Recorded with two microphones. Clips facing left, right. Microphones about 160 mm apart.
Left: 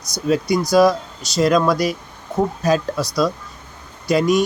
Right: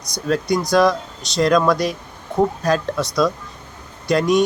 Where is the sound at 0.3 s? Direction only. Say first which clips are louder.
Left 1 dB; 5° left (ahead or behind).